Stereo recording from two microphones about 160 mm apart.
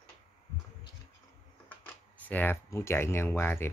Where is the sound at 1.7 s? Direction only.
10° left (ahead or behind).